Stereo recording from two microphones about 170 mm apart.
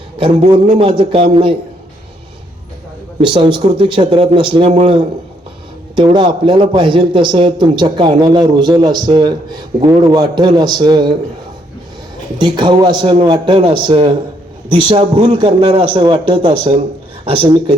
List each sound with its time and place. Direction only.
0.2 s a man's voice: 35° right (ahead or behind)
3.2 s a man's voice: 30° right (ahead or behind)
6.0 s a man's voice: 30° right (ahead or behind)
12.4 s a man's voice: 25° right (ahead or behind)